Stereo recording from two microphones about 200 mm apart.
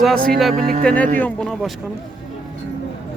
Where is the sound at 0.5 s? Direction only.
45° right (ahead or behind).